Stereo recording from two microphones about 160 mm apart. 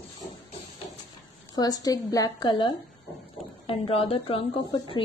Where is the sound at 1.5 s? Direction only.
25° left (ahead or behind).